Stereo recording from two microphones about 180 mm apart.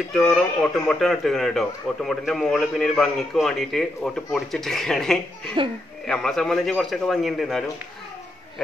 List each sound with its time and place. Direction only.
0.1 s speech: centre (ahead or behind)
5.6 s speech: 30° right (ahead or behind)
6.0 s speech: 5° left (ahead or behind)